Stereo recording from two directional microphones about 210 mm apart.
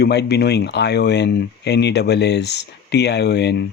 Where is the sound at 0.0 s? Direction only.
50° left (ahead or behind).